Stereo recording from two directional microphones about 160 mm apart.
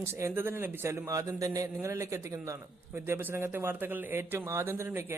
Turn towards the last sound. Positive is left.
turn(degrees=-15)  # may be behind; listen again after turning